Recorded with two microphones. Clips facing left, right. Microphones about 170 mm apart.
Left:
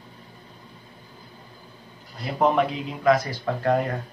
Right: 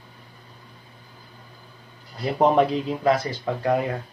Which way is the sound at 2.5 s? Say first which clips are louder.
Right 4 dB; 35° right (ahead or behind).